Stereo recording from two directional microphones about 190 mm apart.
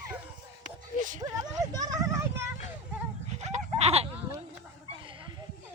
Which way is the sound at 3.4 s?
35° right (ahead or behind).